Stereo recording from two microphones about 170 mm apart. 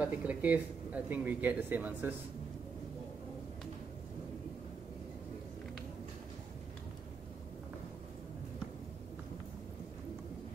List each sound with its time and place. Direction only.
0.0 s speech: 10° right (ahead or behind)